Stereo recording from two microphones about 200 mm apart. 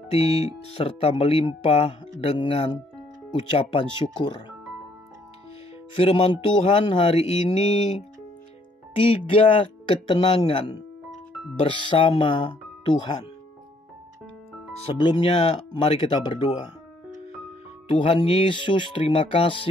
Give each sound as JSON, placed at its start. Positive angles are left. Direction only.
{"t": 0.1, "sound": "speech", "side_deg": 30}
{"t": 5.9, "sound": "speech", "side_deg": 25}
{"t": 15.0, "sound": "speech", "side_deg": 25}
{"t": 17.8, "sound": "speech", "side_deg": 30}